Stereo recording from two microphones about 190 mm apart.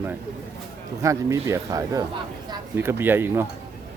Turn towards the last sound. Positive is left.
turn(degrees=-10)  # may be behind; listen again after turning